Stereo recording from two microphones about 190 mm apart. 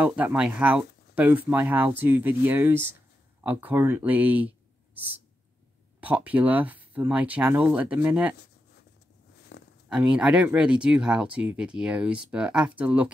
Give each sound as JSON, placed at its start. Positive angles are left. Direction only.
{"t": 0.0, "sound": "speech", "side_deg": -5}
{"t": 9.5, "sound": "a sound", "side_deg": 65}
{"t": 9.8, "sound": "speech", "side_deg": -5}